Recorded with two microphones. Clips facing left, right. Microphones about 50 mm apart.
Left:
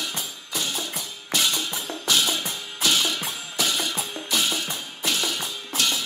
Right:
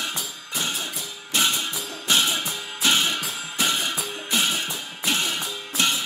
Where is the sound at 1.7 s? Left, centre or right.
Left.